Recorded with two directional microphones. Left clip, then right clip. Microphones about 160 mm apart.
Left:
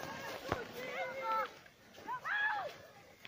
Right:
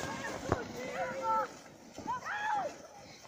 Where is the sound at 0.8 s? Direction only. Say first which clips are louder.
Right 4 dB; 25° left (ahead or behind).